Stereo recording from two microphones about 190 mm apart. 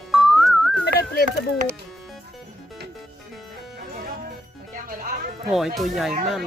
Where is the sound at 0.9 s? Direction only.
55° left (ahead or behind).